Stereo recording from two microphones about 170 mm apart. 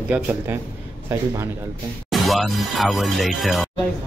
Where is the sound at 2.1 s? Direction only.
Centre (ahead or behind).